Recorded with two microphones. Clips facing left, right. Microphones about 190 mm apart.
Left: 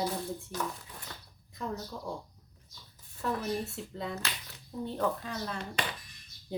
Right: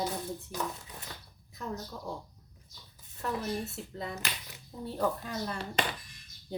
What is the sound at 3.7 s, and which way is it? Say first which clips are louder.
Speech: left 1 dB; centre (ahead or behind).